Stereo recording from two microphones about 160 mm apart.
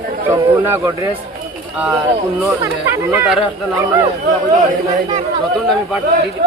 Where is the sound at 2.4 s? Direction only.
15° right (ahead or behind).